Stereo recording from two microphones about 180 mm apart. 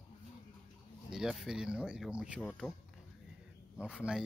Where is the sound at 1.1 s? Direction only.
Centre (ahead or behind).